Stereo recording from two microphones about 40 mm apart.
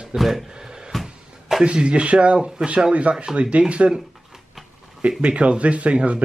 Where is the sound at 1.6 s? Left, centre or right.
Right.